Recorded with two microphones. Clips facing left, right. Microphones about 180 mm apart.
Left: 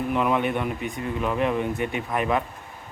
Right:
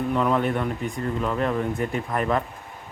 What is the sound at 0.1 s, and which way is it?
Speech, 10° left (ahead or behind).